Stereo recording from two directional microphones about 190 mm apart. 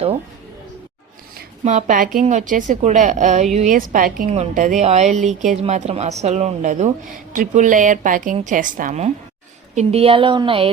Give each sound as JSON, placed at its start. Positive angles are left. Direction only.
{"t": 1.6, "sound": "a woman's voice", "side_deg": -40}